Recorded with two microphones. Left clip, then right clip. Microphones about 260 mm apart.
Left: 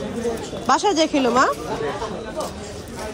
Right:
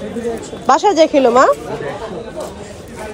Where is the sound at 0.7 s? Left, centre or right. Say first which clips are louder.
Right 7 dB; centre.